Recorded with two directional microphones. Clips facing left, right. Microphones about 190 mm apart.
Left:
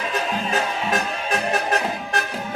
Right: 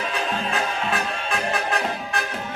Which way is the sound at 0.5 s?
40° left (ahead or behind).